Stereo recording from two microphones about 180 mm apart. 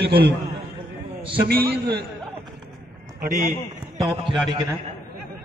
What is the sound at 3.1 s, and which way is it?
Speech, 45° right (ahead or behind).